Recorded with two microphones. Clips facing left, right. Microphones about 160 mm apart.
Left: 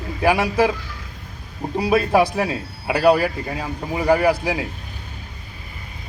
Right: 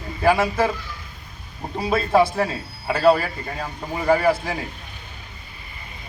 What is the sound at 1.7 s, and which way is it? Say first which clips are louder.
A man's voice: left 2 dB; 10° left (ahead or behind).